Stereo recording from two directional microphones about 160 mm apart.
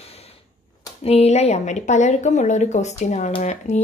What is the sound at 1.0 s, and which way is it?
Speech, 40° left (ahead or behind).